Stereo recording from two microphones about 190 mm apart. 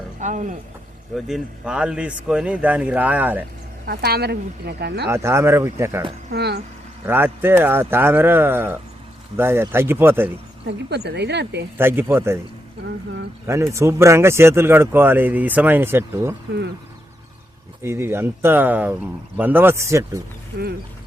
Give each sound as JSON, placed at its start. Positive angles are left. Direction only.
{"t": 0.2, "sound": "speech", "side_deg": -40}
{"t": 1.1, "sound": "speech", "side_deg": -5}
{"t": 3.8, "sound": "speech", "side_deg": -55}
{"t": 5.0, "sound": "speech", "side_deg": -15}
{"t": 6.3, "sound": "speech", "side_deg": -60}
{"t": 7.0, "sound": "speech", "side_deg": -10}
{"t": 10.7, "sound": "speech", "side_deg": -60}
{"t": 11.8, "sound": "speech", "side_deg": -10}
{"t": 13.5, "sound": "speech", "side_deg": -15}
{"t": 17.8, "sound": "speech", "side_deg": -15}